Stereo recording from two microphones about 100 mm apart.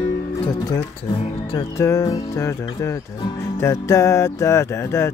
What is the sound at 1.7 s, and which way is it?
Speech, 30° left (ahead or behind).